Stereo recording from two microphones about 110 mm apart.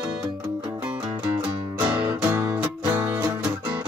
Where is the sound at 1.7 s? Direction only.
15° right (ahead or behind).